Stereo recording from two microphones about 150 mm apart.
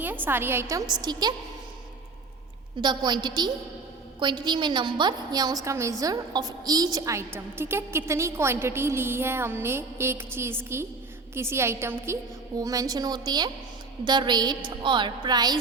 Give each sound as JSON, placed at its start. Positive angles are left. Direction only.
{"t": 0.0, "sound": "a woman's voice", "side_deg": -10}
{"t": 2.8, "sound": "a woman's voice", "side_deg": -30}